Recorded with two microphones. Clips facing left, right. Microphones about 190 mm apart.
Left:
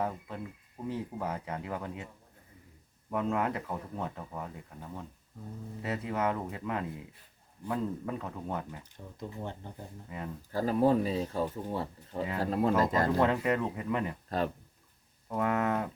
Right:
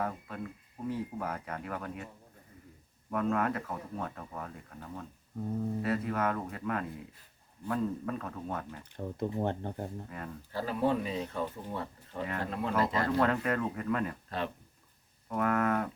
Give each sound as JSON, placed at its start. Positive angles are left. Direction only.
{"t": 0.0, "sound": "speech", "side_deg": 20}
{"t": 3.1, "sound": "speech", "side_deg": 20}
{"t": 9.0, "sound": "speech", "side_deg": -60}
{"t": 10.5, "sound": "speech", "side_deg": 40}
{"t": 13.1, "sound": "speech", "side_deg": 20}
{"t": 14.3, "sound": "speech", "side_deg": 40}
{"t": 15.3, "sound": "speech", "side_deg": 20}